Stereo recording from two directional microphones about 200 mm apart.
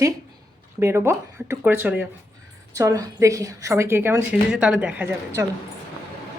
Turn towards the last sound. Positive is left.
turn(degrees=-10)  # may be behind; listen again after turning